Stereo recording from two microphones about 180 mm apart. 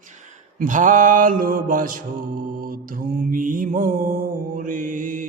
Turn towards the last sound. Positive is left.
turn(degrees=-45)  # may be behind; listen again after turning